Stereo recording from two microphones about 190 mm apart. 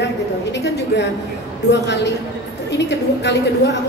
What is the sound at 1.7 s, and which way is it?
A woman's voice, 65° left (ahead or behind).